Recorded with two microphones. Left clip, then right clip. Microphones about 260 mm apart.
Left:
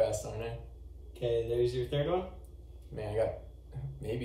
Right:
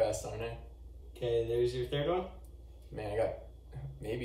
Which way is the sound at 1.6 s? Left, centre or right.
Centre.